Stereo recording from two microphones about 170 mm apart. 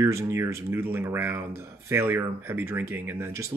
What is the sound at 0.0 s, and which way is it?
Speech, 15° right (ahead or behind).